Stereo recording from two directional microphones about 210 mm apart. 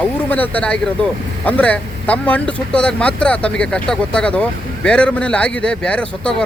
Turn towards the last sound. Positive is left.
turn(degrees=5)  # may be behind; listen again after turning